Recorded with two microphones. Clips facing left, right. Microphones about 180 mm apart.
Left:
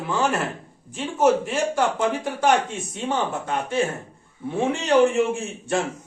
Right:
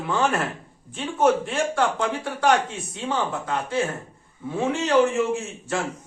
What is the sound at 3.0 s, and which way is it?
Speech, 20° left (ahead or behind).